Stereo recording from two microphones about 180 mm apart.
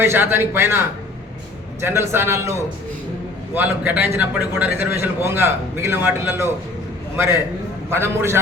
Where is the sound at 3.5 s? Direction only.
10° right (ahead or behind).